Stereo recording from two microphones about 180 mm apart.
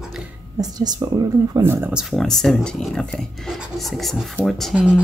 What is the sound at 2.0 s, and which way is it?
Speech, centre (ahead or behind).